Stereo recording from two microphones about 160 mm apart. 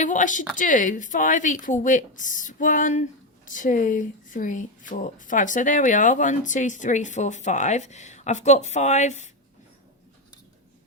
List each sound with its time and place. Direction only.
0.0 s speech: 50° left (ahead or behind)